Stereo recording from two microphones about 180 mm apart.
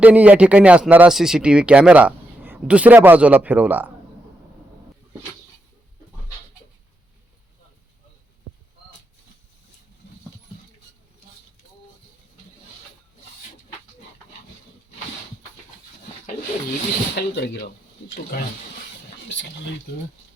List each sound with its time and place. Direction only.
0.0 s speech: 5° right (ahead or behind)
17.2 s speech: 65° left (ahead or behind)